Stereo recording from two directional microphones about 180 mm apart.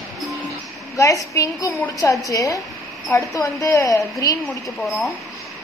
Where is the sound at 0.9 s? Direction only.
20° left (ahead or behind).